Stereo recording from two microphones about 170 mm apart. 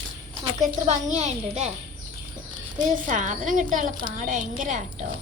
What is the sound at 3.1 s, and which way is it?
A woman's voice, 45° right (ahead or behind).